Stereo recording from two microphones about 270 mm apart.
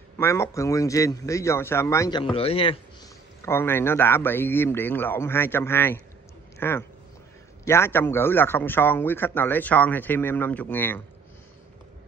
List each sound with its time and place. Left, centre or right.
0.2 s a man's voice: centre